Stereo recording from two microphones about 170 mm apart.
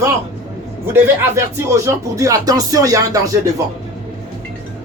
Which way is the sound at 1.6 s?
15° right (ahead or behind).